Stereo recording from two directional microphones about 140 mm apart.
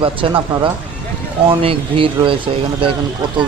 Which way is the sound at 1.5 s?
40° right (ahead or behind).